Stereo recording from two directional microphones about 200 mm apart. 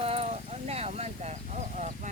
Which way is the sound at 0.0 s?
30° right (ahead or behind).